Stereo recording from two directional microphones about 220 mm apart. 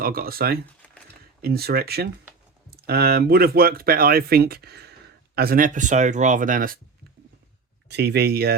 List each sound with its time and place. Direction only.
0.0 s speech: 40° right (ahead or behind)
7.9 s speech: 50° right (ahead or behind)